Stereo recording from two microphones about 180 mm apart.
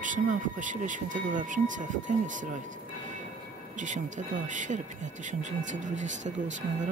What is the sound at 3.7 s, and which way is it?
Speech, 45° right (ahead or behind).